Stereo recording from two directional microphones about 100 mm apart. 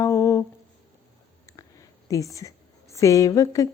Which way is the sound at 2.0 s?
35° left (ahead or behind).